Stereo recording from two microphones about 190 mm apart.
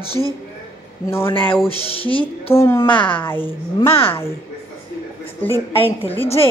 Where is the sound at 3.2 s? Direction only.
10° left (ahead or behind).